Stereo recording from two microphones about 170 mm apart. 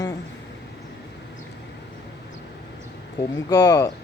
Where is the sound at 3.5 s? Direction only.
20° left (ahead or behind).